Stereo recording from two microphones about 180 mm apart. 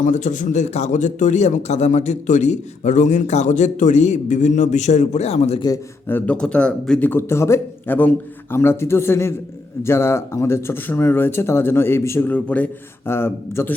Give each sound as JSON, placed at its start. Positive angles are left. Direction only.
{"t": 0.0, "sound": "a man's voice", "side_deg": 45}
{"t": 5.6, "sound": "speech", "side_deg": 15}